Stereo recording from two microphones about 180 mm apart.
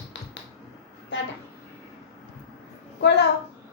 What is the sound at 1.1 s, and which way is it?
Speech, 90° left.